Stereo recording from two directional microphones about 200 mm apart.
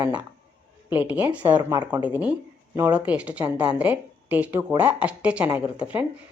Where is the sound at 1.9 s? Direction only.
10° right (ahead or behind).